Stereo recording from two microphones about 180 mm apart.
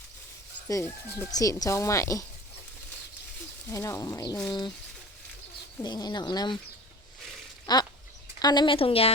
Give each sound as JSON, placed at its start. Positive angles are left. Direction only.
{"t": 0.7, "sound": "speech", "side_deg": 15}
{"t": 3.7, "sound": "speech", "side_deg": 15}
{"t": 5.8, "sound": "speech", "side_deg": 20}
{"t": 7.7, "sound": "speech", "side_deg": 25}